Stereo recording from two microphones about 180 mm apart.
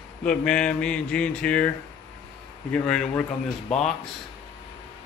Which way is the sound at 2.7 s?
5° left (ahead or behind).